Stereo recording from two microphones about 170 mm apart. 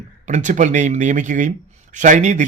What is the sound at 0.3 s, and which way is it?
Speech, 45° right (ahead or behind).